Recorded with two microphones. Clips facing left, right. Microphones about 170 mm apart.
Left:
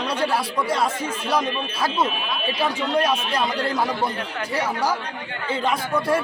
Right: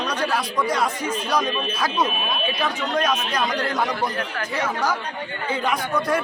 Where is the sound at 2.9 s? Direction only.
10° left (ahead or behind).